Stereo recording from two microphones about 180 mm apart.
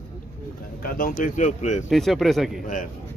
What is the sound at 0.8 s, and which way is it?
A man's voice, 55° left (ahead or behind).